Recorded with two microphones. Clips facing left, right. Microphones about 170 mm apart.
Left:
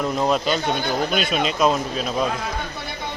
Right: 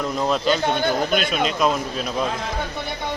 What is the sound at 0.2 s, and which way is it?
A man's voice, 5° left (ahead or behind).